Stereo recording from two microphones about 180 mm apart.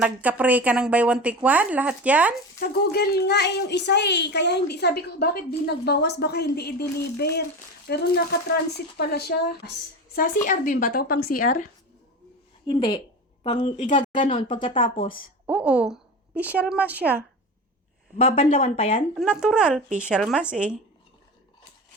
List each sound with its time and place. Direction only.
0.0 s speech: 10° right (ahead or behind)
2.6 s a woman's voice: 60° left (ahead or behind)
10.4 s speech: 45° left (ahead or behind)
12.6 s a woman's voice: 30° left (ahead or behind); by 14.3 s 45° left (ahead or behind)
15.4 s a woman's voice: 5° right (ahead or behind)
18.3 s speech: 30° left (ahead or behind)
19.1 s speech: 5° right (ahead or behind)